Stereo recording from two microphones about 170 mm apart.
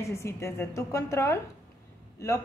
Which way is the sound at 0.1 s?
15° left (ahead or behind).